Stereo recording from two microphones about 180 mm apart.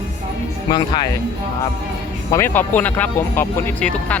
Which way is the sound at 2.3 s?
10° left (ahead or behind).